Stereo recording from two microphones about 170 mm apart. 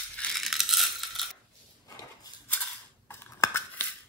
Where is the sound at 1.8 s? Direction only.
20° left (ahead or behind).